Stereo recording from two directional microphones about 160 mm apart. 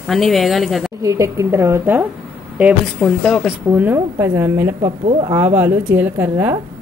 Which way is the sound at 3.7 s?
10° right (ahead or behind).